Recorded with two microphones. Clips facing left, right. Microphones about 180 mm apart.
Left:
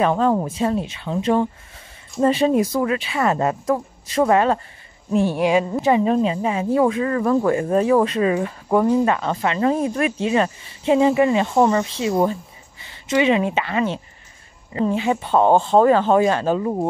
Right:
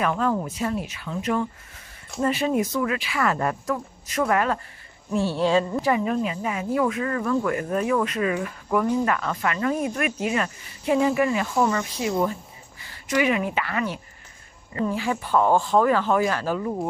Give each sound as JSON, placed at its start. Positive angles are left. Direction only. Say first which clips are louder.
{"t": 0.0, "sound": "a woman's voice", "louder": "left 6 dB", "side_deg": 30}
{"t": 5.1, "sound": "a woman's voice", "louder": "left 4 dB", "side_deg": 15}